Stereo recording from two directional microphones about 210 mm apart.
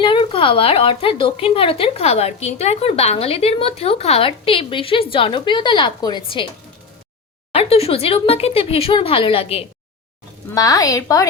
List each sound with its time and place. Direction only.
0.0 s a woman's voice: 25° left (ahead or behind)
7.5 s a woman's voice: 30° left (ahead or behind)
10.5 s a woman's voice: 15° left (ahead or behind)